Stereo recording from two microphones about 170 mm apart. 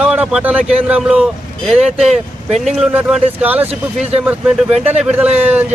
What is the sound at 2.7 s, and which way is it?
Speech, 5° right (ahead or behind).